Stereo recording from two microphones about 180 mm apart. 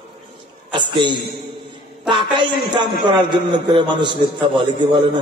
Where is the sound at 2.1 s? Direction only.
25° right (ahead or behind).